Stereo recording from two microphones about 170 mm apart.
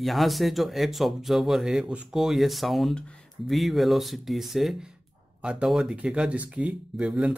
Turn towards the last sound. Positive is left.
turn(degrees=0)  # may be behind; listen again after turning